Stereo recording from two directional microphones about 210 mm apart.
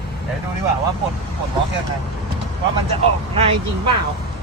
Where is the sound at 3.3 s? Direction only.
25° right (ahead or behind).